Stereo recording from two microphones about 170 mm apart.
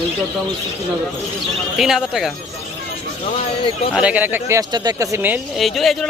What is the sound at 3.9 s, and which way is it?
Speech, 5° right (ahead or behind).